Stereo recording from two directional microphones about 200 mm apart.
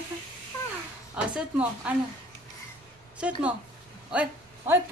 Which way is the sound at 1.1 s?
5° right (ahead or behind).